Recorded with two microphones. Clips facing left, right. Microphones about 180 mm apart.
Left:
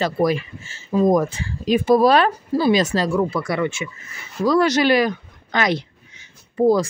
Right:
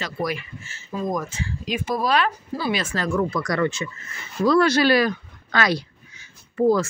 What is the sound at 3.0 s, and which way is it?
Speech, 10° left (ahead or behind).